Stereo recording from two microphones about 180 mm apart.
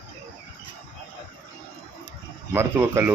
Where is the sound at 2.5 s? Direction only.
15° right (ahead or behind).